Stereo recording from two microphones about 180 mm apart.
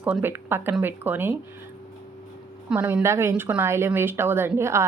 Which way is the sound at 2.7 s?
10° right (ahead or behind).